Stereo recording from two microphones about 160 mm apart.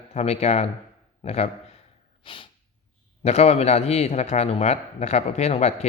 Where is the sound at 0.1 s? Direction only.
45° left (ahead or behind).